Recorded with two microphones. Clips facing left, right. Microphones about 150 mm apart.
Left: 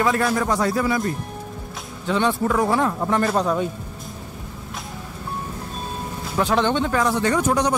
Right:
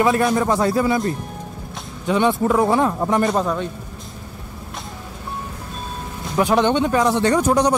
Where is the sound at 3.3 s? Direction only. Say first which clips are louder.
Even; centre (ahead or behind).